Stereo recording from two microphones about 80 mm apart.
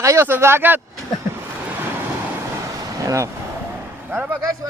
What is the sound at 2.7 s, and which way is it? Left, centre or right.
Vehicle, right.